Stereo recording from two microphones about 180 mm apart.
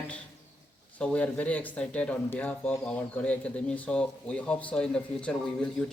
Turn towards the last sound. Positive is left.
turn(degrees=5)  # may be behind; listen again after turning